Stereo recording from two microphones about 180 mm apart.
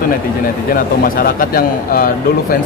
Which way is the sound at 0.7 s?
50° left (ahead or behind).